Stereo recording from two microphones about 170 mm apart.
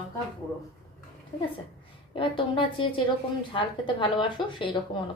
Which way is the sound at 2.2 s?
30° left (ahead or behind).